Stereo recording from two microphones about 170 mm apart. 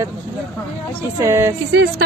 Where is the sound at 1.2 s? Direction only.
15° right (ahead or behind).